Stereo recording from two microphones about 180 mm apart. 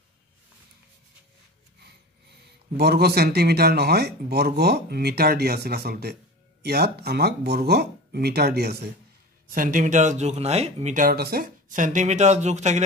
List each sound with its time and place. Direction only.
2.8 s speech: 65° right (ahead or behind)
9.5 s speech: 45° right (ahead or behind)